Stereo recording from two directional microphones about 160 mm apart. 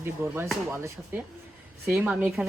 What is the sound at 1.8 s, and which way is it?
Speech, 5° right (ahead or behind).